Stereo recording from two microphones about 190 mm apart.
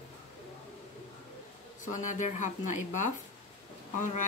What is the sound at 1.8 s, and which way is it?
A woman's voice, 40° left (ahead or behind).